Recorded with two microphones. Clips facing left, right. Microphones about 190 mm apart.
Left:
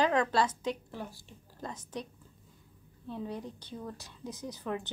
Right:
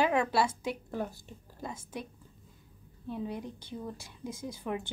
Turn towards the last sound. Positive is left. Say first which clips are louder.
# right 1 dB
turn(degrees=-10)  # may be behind; listen again after turning